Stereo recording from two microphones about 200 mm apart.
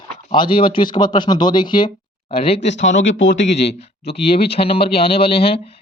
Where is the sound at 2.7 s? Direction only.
65° left (ahead or behind).